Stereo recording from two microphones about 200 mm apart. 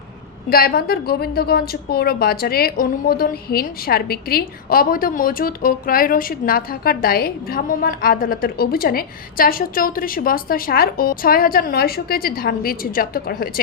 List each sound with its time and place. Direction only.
0.5 s a woman's voice: 50° left (ahead or behind)